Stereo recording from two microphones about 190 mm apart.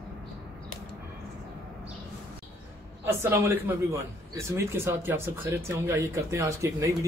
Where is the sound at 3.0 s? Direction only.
15° right (ahead or behind).